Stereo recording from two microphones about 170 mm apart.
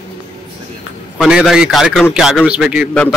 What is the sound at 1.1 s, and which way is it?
A man's voice, centre (ahead or behind).